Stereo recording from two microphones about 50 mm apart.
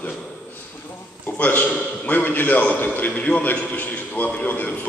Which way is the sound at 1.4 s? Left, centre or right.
Left.